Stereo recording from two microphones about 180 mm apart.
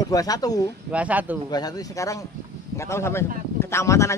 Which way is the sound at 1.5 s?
20° left (ahead or behind).